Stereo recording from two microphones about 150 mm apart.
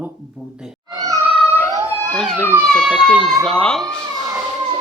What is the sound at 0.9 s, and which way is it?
Cat, 25° right (ahead or behind).